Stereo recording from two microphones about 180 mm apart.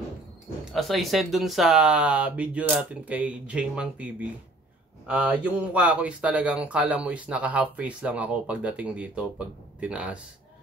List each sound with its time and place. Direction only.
0.7 s speech: centre (ahead or behind)